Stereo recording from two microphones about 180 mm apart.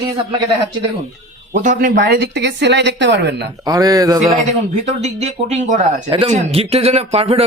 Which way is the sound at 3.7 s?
20° right (ahead or behind).